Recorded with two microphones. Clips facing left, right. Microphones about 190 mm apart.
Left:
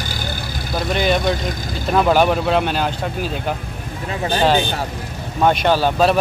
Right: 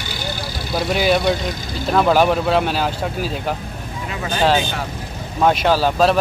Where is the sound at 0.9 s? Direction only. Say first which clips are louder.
Right 1 dB; 5° right (ahead or behind).